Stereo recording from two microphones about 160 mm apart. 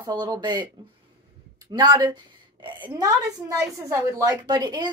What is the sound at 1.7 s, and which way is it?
A woman's voice, 25° right (ahead or behind).